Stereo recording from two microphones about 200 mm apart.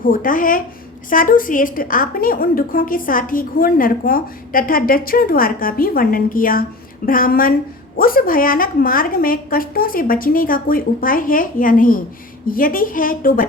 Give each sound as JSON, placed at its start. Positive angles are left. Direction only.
{"t": 0.0, "sound": "a woman's voice", "side_deg": 45}